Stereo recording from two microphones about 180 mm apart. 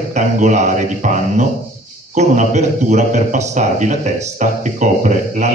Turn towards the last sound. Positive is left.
turn(degrees=-45)  # may be behind; listen again after turning